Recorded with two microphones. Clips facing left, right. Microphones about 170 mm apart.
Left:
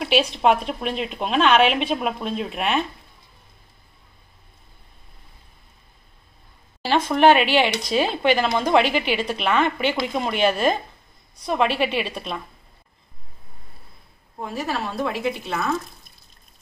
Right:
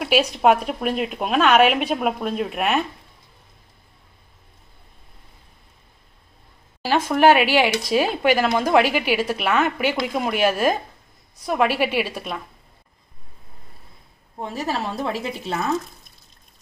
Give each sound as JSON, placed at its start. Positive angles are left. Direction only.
{"t": 0.0, "sound": "speech", "side_deg": -10}
{"t": 6.8, "sound": "speech", "side_deg": -10}
{"t": 14.6, "sound": "a woman's voice", "side_deg": -35}